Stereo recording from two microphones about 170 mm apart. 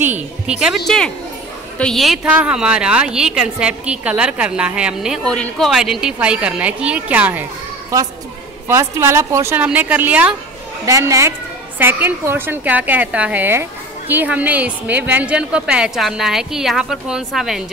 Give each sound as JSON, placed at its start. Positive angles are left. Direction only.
{"t": 0.0, "sound": "a woman's voice", "side_deg": -10}
{"t": 8.6, "sound": "a woman's voice", "side_deg": -15}